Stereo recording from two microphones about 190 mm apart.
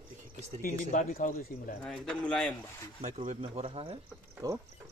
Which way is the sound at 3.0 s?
35° right (ahead or behind).